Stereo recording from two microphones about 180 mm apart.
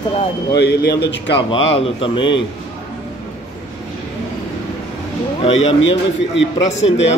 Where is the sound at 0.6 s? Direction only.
65° left (ahead or behind).